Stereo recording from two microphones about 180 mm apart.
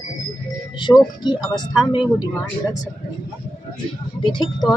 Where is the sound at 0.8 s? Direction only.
25° left (ahead or behind).